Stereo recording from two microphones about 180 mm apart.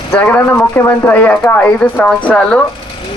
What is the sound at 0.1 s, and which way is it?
Speech, 10° left (ahead or behind).